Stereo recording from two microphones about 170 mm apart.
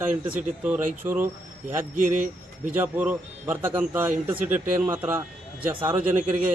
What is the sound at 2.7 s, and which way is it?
Speech, 10° right (ahead or behind).